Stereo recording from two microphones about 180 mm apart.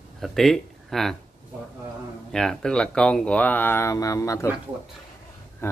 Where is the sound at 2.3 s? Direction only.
5° left (ahead or behind).